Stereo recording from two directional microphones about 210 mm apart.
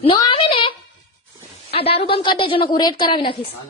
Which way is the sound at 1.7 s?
25° left (ahead or behind).